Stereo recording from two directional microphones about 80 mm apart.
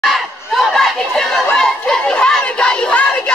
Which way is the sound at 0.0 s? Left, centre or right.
Centre.